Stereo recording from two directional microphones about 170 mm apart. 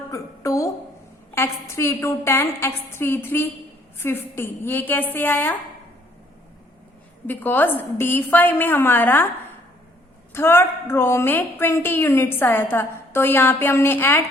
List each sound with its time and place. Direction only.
0.1 s a sound: 20° left (ahead or behind)
1.4 s a woman's voice: 15° left (ahead or behind)
7.3 s a woman's voice: 10° left (ahead or behind)
10.3 s a woman's voice: 15° left (ahead or behind)